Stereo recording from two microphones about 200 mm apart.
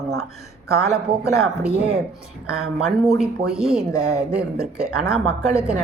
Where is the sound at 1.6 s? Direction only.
5° right (ahead or behind).